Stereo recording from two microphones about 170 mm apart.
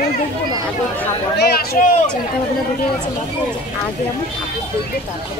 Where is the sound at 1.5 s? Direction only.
60° left (ahead or behind).